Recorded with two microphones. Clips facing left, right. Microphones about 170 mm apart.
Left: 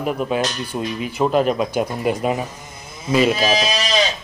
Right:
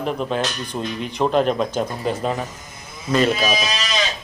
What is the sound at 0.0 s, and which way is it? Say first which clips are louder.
A man's voice: left 2 dB; 5° left (ahead or behind).